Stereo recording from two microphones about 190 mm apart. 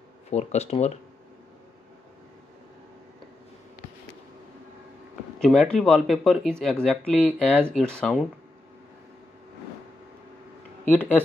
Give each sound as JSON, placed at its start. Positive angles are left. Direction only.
{"t": 0.3, "sound": "speech", "side_deg": 35}
{"t": 5.4, "sound": "speech", "side_deg": 5}
{"t": 10.9, "sound": "speech", "side_deg": 10}